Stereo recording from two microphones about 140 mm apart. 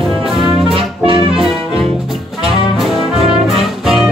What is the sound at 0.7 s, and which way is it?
Music, 40° right (ahead or behind).